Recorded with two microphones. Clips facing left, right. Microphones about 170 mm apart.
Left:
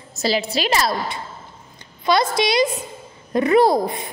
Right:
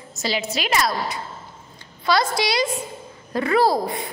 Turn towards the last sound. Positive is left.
turn(degrees=20)  # may be behind; listen again after turning